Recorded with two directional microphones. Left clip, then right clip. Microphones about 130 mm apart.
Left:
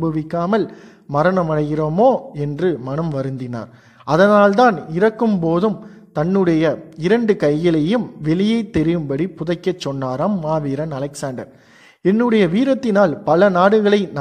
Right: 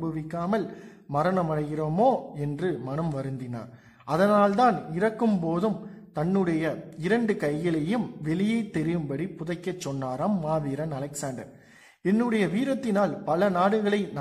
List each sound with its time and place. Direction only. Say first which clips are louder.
0.1 s a man's voice: left 10 dB; 35° left (ahead or behind)
1.9 s a man's voice: left 8 dB; 20° left (ahead or behind)
2.3 s a man's voice: left 10 dB; 30° left (ahead or behind)